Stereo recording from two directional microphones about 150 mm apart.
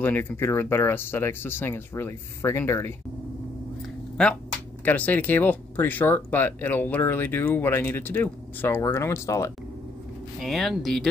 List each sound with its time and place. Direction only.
0.0 s speech: 15° left (ahead or behind)
4.8 s speech: 10° left (ahead or behind)
10.4 s speech: 5° left (ahead or behind)